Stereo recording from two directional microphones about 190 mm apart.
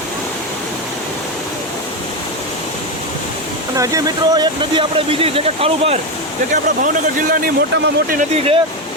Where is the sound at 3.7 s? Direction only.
15° right (ahead or behind).